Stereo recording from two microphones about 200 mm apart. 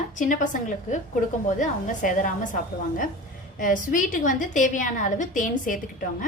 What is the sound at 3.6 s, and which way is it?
A woman's voice, 40° left (ahead or behind).